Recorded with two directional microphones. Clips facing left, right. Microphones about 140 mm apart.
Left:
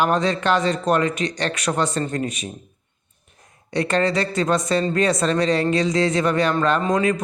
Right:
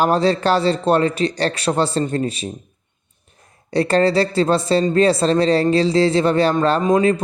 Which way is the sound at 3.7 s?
35° right (ahead or behind).